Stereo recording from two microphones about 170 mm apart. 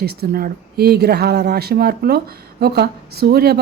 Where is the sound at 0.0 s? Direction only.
65° right (ahead or behind).